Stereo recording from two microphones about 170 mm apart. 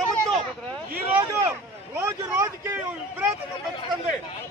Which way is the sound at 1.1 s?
15° right (ahead or behind).